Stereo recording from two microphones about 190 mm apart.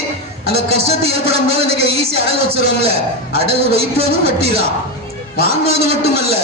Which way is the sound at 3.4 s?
30° right (ahead or behind).